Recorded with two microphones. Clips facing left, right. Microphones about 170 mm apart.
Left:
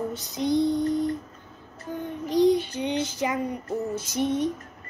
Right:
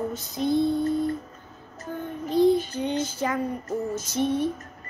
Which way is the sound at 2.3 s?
15° left (ahead or behind).